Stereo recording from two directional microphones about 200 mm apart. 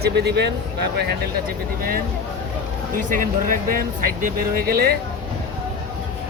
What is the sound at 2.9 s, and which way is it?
Speech, 40° right (ahead or behind).